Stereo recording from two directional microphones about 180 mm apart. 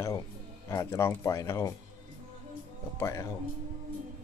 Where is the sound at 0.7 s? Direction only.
15° left (ahead or behind).